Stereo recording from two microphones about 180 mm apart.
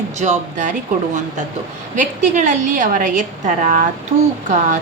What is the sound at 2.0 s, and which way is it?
A woman's voice, 45° right (ahead or behind).